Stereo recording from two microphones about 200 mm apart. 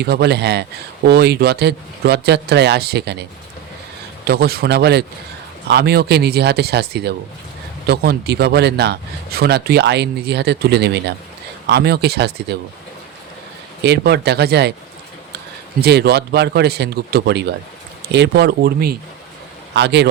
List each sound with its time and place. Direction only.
0.0 s speech: 55° right (ahead or behind)
4.3 s speech: 50° right (ahead or behind)
13.8 s speech: 55° right (ahead or behind)
15.8 s speech: 55° right (ahead or behind)